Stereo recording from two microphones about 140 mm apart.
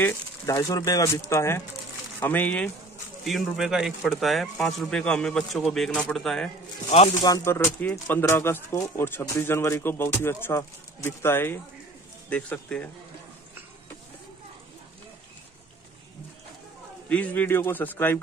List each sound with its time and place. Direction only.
0.5 s speech: 25° left (ahead or behind)
3.3 s speech: centre (ahead or behind)
6.9 s speech: 50° left (ahead or behind)
7.2 s speech: 25° left (ahead or behind); by 12.8 s 10° left (ahead or behind)
17.1 s speech: 10° left (ahead or behind)